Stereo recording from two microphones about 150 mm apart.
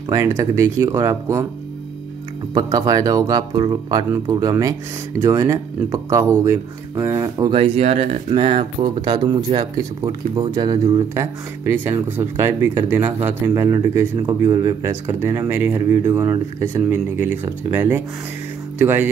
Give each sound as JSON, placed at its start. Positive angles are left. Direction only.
{"t": 0.1, "sound": "speech", "side_deg": -20}
{"t": 2.5, "sound": "speech", "side_deg": -25}
{"t": 7.5, "sound": "speech", "side_deg": -40}
{"t": 8.4, "sound": "speech", "side_deg": -35}